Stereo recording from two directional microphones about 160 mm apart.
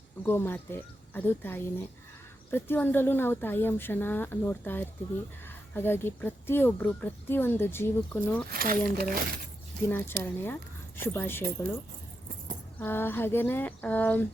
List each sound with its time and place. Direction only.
0.3 s speech: 15° left (ahead or behind)
8.4 s speech: 65° right (ahead or behind)
9.9 s speech: 15° left (ahead or behind)
12.8 s speech: 15° left (ahead or behind)